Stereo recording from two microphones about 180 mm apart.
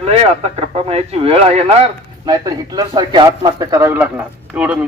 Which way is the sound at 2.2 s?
20° right (ahead or behind).